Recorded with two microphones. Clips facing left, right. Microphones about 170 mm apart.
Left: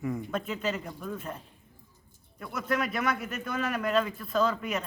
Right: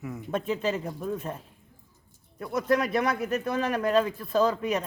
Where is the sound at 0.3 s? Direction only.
30° right (ahead or behind).